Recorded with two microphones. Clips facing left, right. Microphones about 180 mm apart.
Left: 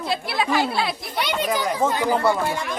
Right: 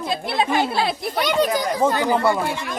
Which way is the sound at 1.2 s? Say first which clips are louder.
Right 3 dB; 40° right (ahead or behind).